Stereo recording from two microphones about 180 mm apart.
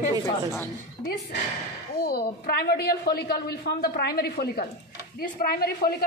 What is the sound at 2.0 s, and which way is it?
A woman's voice, 60° left (ahead or behind).